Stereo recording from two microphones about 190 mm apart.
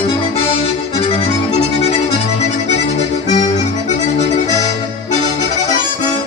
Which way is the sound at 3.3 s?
35° left (ahead or behind).